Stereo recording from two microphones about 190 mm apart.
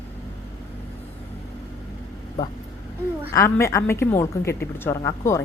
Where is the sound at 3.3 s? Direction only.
15° left (ahead or behind).